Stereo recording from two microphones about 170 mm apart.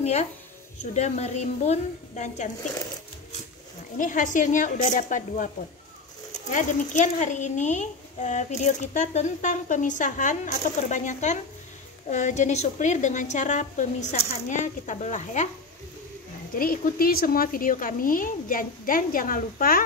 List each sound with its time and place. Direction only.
0.0 s a woman's voice: 40° left (ahead or behind)
4.0 s speech: 50° left (ahead or behind)
16.5 s speech: 55° left (ahead or behind)